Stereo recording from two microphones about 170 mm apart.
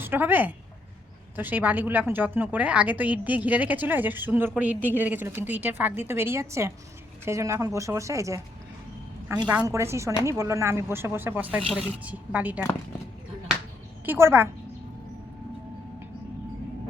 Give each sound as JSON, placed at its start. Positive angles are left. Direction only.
{"t": 0.0, "sound": "a woman's voice", "side_deg": -10}
{"t": 9.5, "sound": "a woman's voice", "side_deg": -15}
{"t": 14.0, "sound": "a woman's voice", "side_deg": -10}